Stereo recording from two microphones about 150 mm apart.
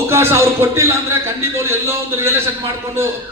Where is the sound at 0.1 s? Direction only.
15° right (ahead or behind).